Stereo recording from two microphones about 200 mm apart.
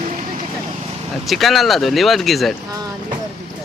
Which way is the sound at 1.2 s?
Centre (ahead or behind).